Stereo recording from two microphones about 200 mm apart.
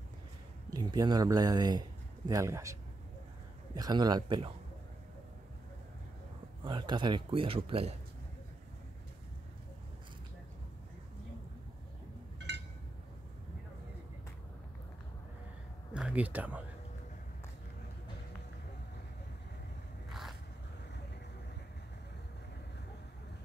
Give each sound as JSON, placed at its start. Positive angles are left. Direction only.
{"t": 0.7, "sound": "speech", "side_deg": -20}
{"t": 6.6, "sound": "speech", "side_deg": -20}
{"t": 15.9, "sound": "speech", "side_deg": -5}
{"t": 20.1, "sound": "a sound", "side_deg": 0}